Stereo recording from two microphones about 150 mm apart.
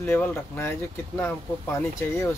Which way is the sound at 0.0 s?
15° left (ahead or behind).